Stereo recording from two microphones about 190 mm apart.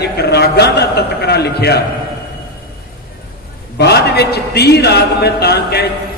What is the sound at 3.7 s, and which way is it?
A man's voice, 60° left (ahead or behind).